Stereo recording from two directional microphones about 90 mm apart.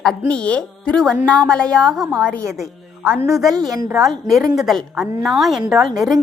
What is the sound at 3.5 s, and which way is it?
Speech, 45° right (ahead or behind).